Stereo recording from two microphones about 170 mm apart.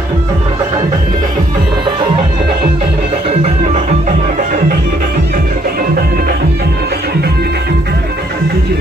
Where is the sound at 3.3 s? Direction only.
40° right (ahead or behind).